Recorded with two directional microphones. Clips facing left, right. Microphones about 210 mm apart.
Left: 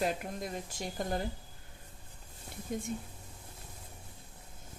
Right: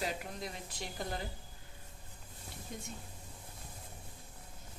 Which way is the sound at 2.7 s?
50° left (ahead or behind).